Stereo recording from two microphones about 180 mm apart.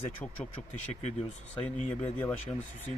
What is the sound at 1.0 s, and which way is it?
Speech, 40° left (ahead or behind).